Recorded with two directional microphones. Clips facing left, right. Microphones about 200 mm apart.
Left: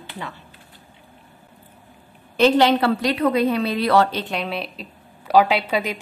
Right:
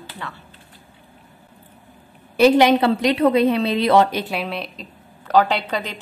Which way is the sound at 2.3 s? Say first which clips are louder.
Right 2 dB; 10° right (ahead or behind).